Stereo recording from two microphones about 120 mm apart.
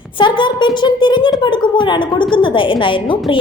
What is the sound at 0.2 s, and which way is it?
A woman's voice, 40° left (ahead or behind).